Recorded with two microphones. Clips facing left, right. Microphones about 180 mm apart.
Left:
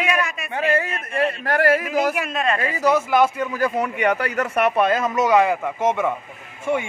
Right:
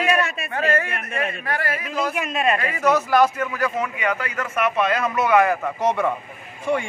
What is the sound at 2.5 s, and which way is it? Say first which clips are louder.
A man's voice: left 1 dB; 25° left (ahead or behind).